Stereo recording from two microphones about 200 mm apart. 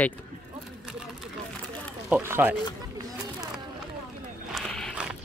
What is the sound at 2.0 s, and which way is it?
Speech, 10° right (ahead or behind).